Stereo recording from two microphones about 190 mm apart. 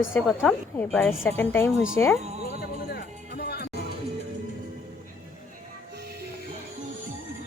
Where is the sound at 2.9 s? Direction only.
55° left (ahead or behind).